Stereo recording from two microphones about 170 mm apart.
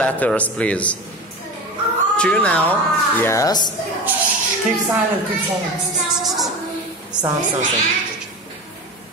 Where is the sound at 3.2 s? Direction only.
20° left (ahead or behind).